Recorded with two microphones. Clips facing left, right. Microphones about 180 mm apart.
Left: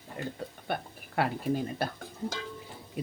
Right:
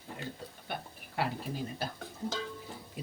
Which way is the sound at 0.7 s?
55° left (ahead or behind).